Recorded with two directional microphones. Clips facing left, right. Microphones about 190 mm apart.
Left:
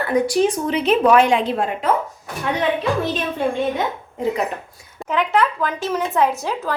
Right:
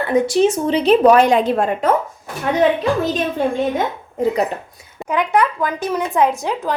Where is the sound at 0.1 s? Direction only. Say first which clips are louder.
Right 3 dB; 25° right (ahead or behind); by 3.4 s 40° right (ahead or behind).